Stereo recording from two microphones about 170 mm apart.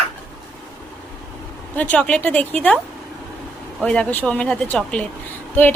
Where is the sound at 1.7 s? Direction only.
5° left (ahead or behind).